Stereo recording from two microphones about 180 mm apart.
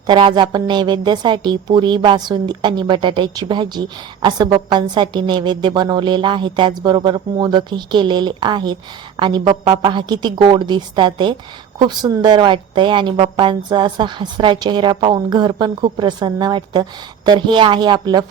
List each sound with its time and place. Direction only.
0.1 s a woman's voice: 25° right (ahead or behind)